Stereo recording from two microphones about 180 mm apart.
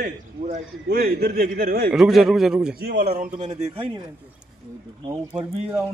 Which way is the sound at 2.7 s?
55° right (ahead or behind).